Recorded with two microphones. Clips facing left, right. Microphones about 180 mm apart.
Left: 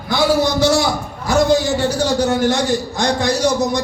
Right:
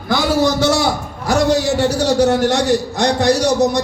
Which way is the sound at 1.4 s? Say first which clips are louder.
Right 1 dB; 75° right (ahead or behind).